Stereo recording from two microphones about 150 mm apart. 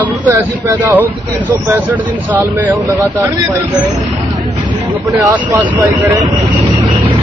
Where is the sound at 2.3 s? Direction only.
10° right (ahead or behind).